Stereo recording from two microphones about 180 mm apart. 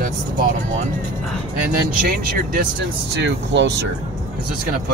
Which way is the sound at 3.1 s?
70° right (ahead or behind).